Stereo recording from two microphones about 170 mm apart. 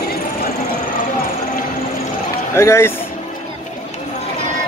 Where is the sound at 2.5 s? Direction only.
15° left (ahead or behind).